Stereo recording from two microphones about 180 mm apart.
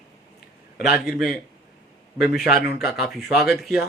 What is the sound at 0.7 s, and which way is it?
Speech, 5° right (ahead or behind).